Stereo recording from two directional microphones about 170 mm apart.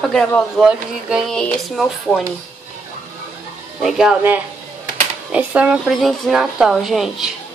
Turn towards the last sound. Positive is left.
turn(degrees=0)  # may be behind; listen again after turning